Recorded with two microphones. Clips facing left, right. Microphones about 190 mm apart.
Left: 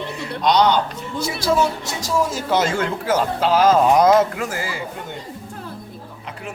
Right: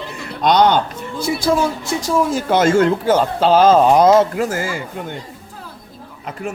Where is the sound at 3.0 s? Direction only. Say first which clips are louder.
Right 4 dB; 30° right (ahead or behind).